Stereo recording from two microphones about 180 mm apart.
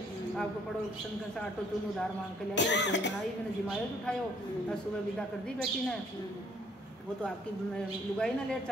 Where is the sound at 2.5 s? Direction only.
80° left.